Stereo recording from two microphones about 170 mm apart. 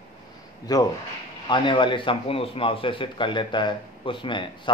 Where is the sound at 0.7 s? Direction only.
20° left (ahead or behind).